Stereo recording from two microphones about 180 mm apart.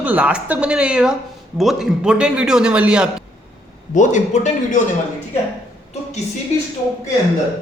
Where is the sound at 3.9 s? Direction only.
45° left (ahead or behind).